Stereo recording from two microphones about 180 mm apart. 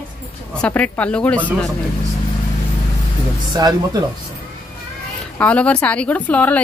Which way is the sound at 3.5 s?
20° right (ahead or behind).